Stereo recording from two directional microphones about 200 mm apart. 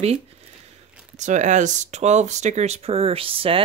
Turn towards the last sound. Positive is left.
turn(degrees=-25)  # may be behind; listen again after turning